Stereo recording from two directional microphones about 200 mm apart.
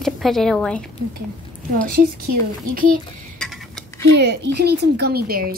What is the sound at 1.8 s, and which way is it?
Speech, 45° right (ahead or behind).